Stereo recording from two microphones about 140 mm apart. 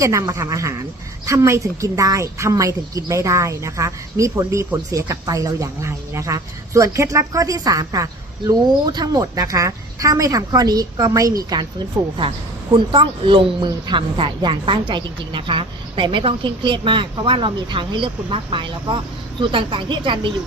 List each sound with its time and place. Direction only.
0.0 s a woman's voice: 25° right (ahead or behind)
12.7 s speech: 35° right (ahead or behind)